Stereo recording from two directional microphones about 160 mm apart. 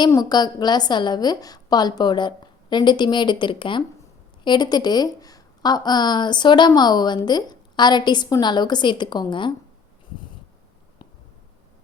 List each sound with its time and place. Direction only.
0.0 s a woman's voice: 25° left (ahead or behind)